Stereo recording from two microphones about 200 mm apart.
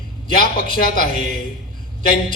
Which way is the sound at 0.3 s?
50° left (ahead or behind).